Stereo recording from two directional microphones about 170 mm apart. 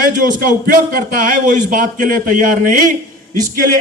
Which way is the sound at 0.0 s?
55° right (ahead or behind).